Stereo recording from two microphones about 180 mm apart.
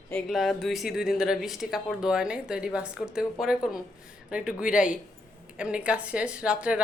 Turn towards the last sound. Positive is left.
turn(degrees=-5)  # may be behind; listen again after turning